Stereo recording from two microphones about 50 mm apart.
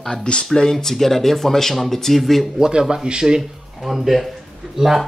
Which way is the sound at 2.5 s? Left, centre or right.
Centre.